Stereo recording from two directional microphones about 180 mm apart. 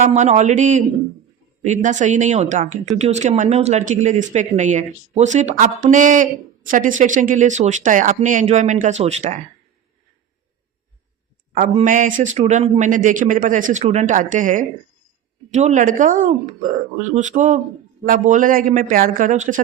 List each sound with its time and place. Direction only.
0.0 s speech: 40° right (ahead or behind)
11.5 s speech: 45° right (ahead or behind)